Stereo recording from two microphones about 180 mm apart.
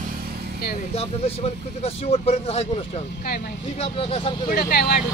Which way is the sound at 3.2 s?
55° left (ahead or behind).